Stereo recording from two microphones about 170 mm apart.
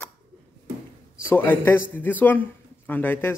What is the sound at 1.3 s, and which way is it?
Speech, 15° left (ahead or behind).